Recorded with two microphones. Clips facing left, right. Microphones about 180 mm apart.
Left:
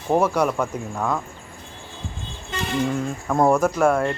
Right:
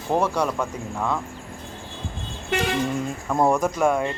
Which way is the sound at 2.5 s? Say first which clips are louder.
Right 6 dB; 75° right (ahead or behind).